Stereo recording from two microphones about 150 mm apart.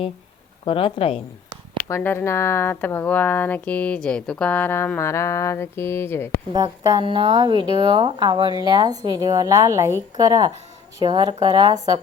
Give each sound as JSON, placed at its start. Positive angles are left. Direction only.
{"t": 0.6, "sound": "a woman's voice", "side_deg": 35}
{"t": 1.9, "sound": "speech", "side_deg": 15}
{"t": 6.5, "sound": "a woman's voice", "side_deg": -25}